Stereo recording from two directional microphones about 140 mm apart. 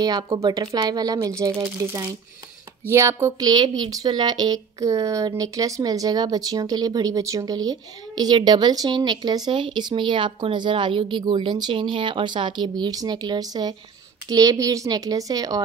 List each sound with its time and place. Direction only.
0.5 s speech: 30° right (ahead or behind)